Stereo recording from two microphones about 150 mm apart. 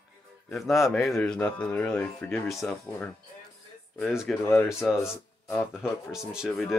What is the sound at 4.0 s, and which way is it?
Speech, centre (ahead or behind).